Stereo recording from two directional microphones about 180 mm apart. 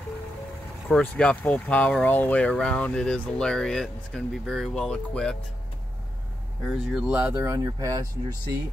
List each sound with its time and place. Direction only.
0.8 s speech: 5° left (ahead or behind)
6.6 s speech: centre (ahead or behind); by 8.5 s 20° right (ahead or behind)